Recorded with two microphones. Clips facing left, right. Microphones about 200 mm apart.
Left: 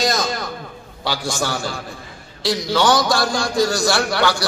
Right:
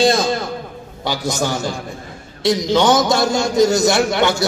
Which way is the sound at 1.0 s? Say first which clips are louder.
Right 3 dB; 20° right (ahead or behind).